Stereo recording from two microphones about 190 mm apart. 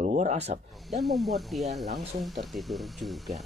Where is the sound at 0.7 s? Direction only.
Centre (ahead or behind).